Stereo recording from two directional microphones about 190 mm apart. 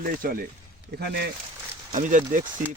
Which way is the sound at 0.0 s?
50° right (ahead or behind).